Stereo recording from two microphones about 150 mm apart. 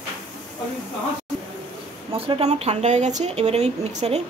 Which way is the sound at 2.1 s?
40° right (ahead or behind).